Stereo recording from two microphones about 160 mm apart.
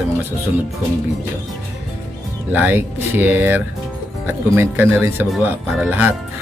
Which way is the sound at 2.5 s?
10° right (ahead or behind).